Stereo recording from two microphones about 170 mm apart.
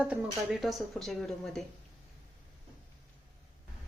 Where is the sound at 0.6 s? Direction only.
Centre (ahead or behind).